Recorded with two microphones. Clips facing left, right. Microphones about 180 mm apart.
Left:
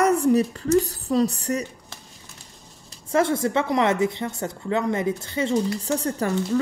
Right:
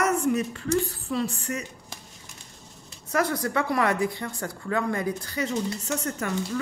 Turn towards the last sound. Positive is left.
turn(degrees=30)  # may be behind; listen again after turning